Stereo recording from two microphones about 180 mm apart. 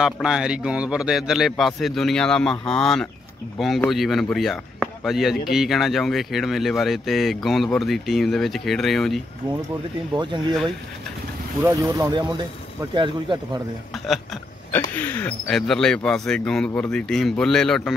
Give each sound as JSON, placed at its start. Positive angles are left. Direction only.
{"t": 0.0, "sound": "speech", "side_deg": -5}
{"t": 11.6, "sound": "speech", "side_deg": -15}
{"t": 13.9, "sound": "a sound", "side_deg": 0}
{"t": 15.0, "sound": "speech", "side_deg": 10}